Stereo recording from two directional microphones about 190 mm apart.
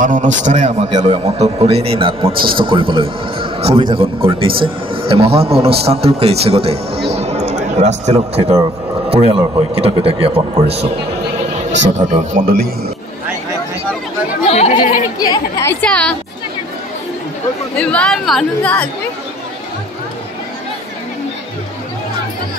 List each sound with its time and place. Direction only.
0.0 s a man's voice: 45° right (ahead or behind)
12.1 s a man's voice: 45° right (ahead or behind)
14.4 s speech: 35° left (ahead or behind)
15.1 s speech: 20° left (ahead or behind)
15.8 s speech: 5° left (ahead or behind)
17.7 s speech: 5° left (ahead or behind)